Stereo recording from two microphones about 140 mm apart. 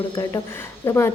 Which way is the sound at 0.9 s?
20° left (ahead or behind).